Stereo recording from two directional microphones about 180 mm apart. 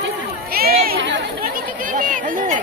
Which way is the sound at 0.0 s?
55° right (ahead or behind).